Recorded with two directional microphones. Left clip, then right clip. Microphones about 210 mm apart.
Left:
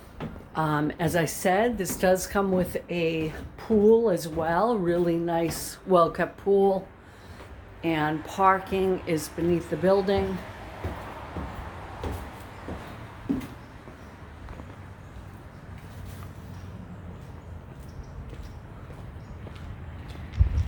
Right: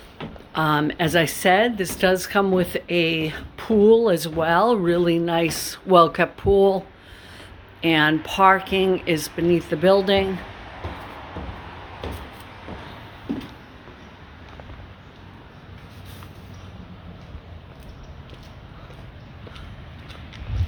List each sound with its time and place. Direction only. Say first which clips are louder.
0.5 s speech: right 6 dB; 30° right (ahead or behind)
7.8 s speech: right 8 dB; 35° right (ahead or behind)